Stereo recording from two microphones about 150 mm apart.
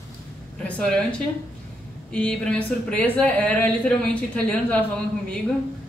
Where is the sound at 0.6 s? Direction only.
5° left (ahead or behind).